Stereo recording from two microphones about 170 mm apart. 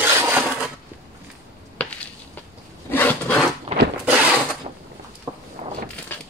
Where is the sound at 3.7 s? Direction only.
40° right (ahead or behind).